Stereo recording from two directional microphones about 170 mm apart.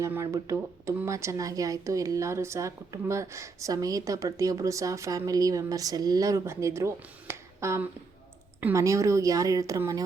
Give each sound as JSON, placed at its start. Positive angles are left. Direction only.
{"t": 0.0, "sound": "speech", "side_deg": -15}